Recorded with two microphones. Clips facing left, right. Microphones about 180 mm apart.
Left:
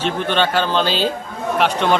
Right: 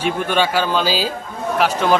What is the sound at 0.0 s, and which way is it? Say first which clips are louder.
A man's voice: even; 10° right (ahead or behind).